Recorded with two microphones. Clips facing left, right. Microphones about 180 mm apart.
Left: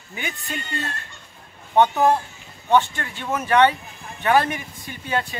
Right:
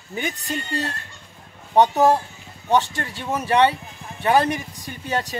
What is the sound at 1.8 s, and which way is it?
Speech, 40° right (ahead or behind).